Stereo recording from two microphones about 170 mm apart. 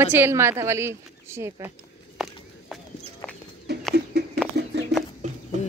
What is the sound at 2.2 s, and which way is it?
Walk, centre (ahead or behind).